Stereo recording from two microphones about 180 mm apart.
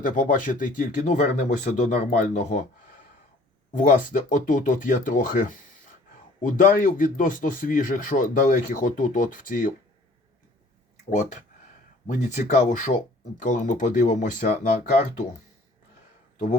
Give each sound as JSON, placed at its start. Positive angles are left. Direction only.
{"t": 0.0, "sound": "speech", "side_deg": 50}
{"t": 11.1, "sound": "speech", "side_deg": 45}